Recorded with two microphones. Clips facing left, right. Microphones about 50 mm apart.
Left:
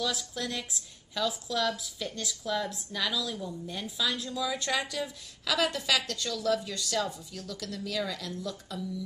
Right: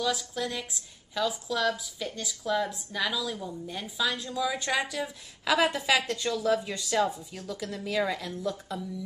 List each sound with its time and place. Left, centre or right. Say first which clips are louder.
0.0 s a woman's voice: right 3 dB; centre